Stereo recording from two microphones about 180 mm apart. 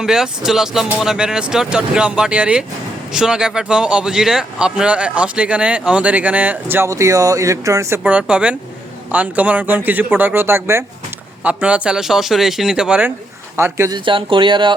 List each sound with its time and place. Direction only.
0.0 s a man's voice: 5° right (ahead or behind); by 14.7 s 25° right (ahead or behind)